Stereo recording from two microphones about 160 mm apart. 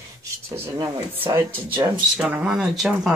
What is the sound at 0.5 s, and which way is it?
Speech, 15° right (ahead or behind).